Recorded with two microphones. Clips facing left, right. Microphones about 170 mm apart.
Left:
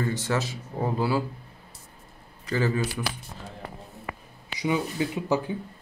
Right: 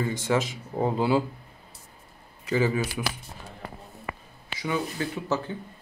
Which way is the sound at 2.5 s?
10° right (ahead or behind).